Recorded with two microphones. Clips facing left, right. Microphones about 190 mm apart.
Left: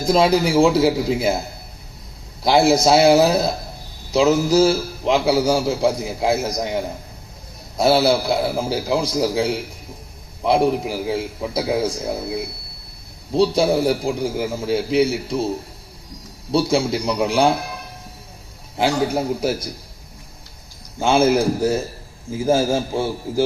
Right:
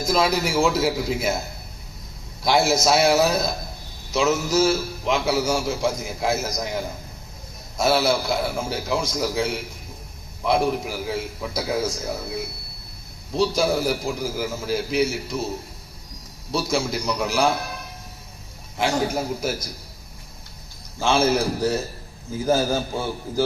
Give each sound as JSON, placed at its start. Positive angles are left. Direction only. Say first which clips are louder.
{"t": 0.0, "sound": "a man's voice", "louder": "left 5 dB", "side_deg": 30}
{"t": 2.4, "sound": "a man's voice", "louder": "left 5 dB", "side_deg": 30}
{"t": 13.6, "sound": "a man's voice", "louder": "left 4 dB", "side_deg": 30}
{"t": 16.5, "sound": "a man's voice", "louder": "left 6 dB", "side_deg": 30}
{"t": 18.8, "sound": "a man's voice", "louder": "left 4 dB", "side_deg": 30}
{"t": 22.4, "sound": "a man's voice", "louder": "left 3 dB", "side_deg": 30}